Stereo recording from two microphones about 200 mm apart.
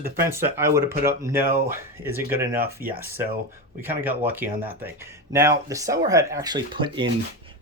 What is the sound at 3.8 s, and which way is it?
Speech, 10° right (ahead or behind).